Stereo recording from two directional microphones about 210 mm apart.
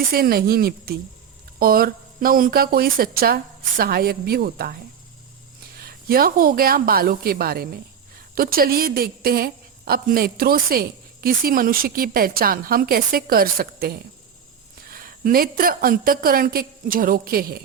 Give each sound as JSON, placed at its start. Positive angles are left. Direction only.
{"t": 0.1, "sound": "a woman's voice", "side_deg": -45}
{"t": 5.8, "sound": "a woman's voice", "side_deg": -45}